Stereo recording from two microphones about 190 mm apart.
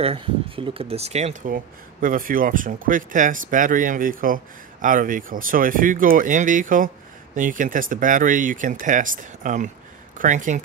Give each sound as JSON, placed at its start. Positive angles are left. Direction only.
{"t": 0.0, "sound": "speech", "side_deg": -30}